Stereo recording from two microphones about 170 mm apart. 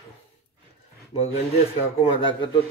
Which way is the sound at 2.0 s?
30° left (ahead or behind).